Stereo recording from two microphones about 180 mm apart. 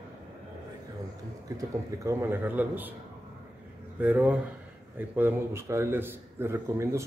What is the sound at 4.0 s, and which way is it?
A man's voice, 10° right (ahead or behind).